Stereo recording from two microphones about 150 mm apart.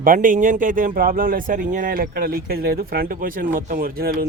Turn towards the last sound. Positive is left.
turn(degrees=-85)